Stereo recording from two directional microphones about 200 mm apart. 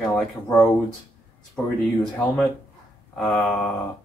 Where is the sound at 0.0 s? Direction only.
5° left (ahead or behind).